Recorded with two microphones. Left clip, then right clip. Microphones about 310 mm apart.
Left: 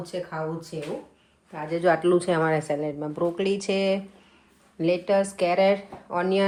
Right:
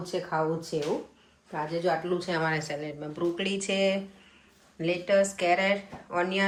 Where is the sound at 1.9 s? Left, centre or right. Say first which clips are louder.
Left 9 dB; left.